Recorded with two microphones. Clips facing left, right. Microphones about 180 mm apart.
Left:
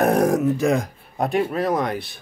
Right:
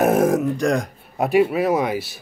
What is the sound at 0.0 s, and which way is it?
Speech, centre (ahead or behind).